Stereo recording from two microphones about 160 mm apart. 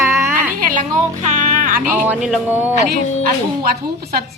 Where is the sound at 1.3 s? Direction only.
55° right (ahead or behind).